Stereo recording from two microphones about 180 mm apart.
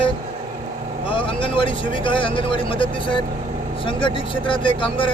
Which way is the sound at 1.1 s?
30° left (ahead or behind).